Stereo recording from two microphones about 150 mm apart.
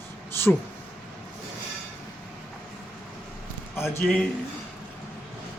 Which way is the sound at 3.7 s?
15° left (ahead or behind).